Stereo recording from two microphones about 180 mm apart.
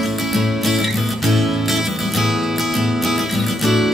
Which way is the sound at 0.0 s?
Centre (ahead or behind).